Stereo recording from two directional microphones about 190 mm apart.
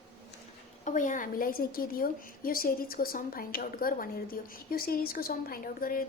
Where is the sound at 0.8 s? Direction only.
40° left (ahead or behind).